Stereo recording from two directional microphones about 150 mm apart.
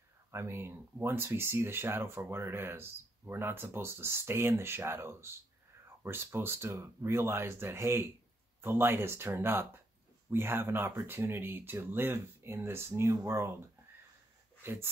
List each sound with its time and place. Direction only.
0.3 s speech: 15° right (ahead or behind)
14.6 s speech: 15° right (ahead or behind)